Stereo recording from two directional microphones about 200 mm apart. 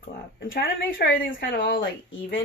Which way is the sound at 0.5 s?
50° left (ahead or behind).